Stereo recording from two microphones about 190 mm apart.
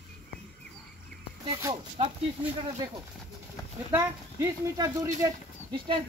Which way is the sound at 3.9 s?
15° right (ahead or behind).